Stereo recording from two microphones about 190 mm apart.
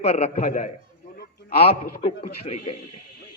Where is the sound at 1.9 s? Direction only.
35° left (ahead or behind).